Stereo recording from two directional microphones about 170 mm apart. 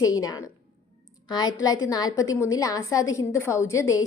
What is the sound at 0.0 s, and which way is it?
A woman's voice, 20° left (ahead or behind).